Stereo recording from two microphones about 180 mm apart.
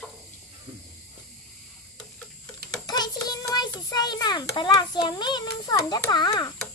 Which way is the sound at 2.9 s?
20° left (ahead or behind).